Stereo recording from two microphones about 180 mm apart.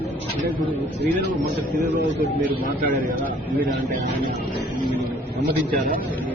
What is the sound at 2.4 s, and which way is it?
Speech, 50° right (ahead or behind).